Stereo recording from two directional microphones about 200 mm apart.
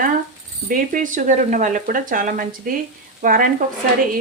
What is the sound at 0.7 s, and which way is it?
Speech, 40° right (ahead or behind).